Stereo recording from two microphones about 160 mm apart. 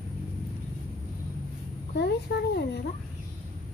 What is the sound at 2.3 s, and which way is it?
Speech, 90° left.